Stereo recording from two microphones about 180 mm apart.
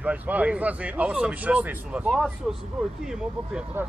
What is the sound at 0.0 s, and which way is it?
Speech, 10° right (ahead or behind).